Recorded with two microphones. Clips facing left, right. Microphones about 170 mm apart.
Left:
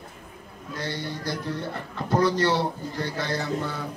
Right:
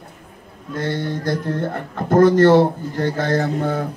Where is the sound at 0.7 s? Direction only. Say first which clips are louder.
Right 9 dB; 50° right (ahead or behind).